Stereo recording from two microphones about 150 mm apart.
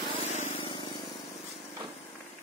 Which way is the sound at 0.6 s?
30° left (ahead or behind).